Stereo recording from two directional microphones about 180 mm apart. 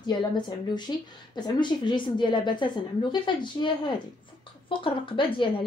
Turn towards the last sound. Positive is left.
turn(degrees=30)  # may be behind; listen again after turning